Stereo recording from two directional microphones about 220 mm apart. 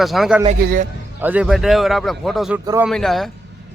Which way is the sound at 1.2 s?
10° right (ahead or behind).